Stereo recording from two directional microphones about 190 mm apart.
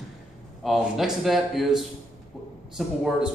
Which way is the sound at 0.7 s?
Centre (ahead or behind).